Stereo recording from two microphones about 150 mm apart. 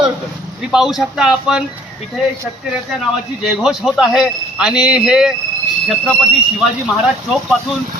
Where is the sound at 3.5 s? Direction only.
Centre (ahead or behind).